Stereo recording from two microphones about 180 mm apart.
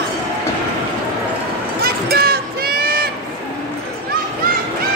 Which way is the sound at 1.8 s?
60° right (ahead or behind).